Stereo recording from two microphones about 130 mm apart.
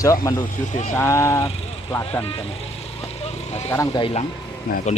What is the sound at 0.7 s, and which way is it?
Speech, 65° left (ahead or behind).